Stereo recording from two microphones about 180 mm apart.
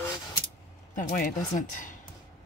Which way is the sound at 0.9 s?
45° left (ahead or behind).